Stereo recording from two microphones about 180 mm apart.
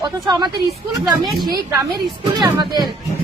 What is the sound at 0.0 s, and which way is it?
Speech, 25° right (ahead or behind).